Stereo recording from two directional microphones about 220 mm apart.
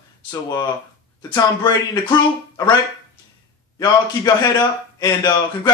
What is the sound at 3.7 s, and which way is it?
Speech, 20° left (ahead or behind).